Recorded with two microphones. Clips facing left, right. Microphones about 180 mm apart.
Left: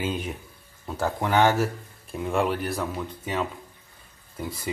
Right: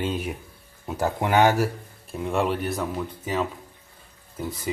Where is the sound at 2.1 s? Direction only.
Centre (ahead or behind).